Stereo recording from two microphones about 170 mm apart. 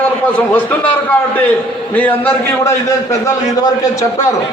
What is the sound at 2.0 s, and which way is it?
A man's voice, 10° left (ahead or behind).